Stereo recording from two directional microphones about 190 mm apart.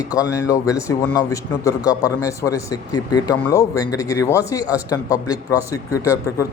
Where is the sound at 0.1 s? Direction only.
15° left (ahead or behind).